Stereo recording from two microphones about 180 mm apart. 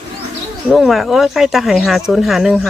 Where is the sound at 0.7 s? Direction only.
Centre (ahead or behind).